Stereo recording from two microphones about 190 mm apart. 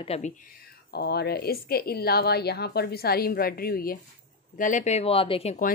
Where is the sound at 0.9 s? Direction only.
60° left (ahead or behind); by 5.6 s 30° left (ahead or behind).